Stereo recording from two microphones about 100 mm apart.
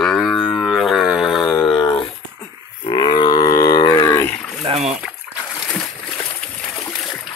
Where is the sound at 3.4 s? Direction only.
30° left (ahead or behind).